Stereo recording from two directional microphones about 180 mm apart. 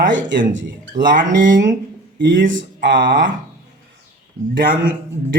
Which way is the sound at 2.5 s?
90° right.